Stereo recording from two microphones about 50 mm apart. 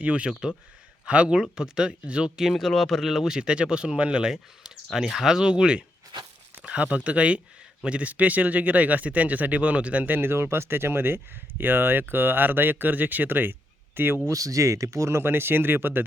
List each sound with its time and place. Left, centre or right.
0.0 s speech: right
2.5 s speech: centre; by 10.1 s right
10.1 s speech: right
14.3 s speech: right
15.2 s speech: right